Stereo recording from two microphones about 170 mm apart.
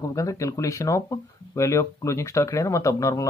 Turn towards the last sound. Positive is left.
turn(degrees=20)  # may be behind; listen again after turning